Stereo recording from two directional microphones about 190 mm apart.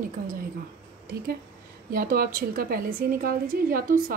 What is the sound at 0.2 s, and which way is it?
Speech, 50° right (ahead or behind).